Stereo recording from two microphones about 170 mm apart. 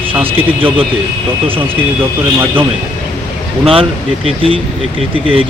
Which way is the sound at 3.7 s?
35° right (ahead or behind).